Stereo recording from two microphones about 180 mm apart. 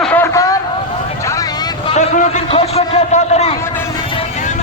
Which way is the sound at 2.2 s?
35° left (ahead or behind).